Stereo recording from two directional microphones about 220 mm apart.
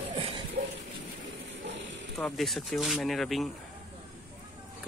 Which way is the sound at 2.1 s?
Centre (ahead or behind).